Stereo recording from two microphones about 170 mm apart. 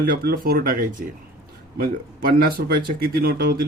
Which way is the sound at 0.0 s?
65° right (ahead or behind).